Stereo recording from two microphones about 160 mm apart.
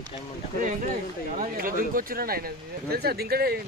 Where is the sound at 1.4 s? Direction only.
60° right (ahead or behind).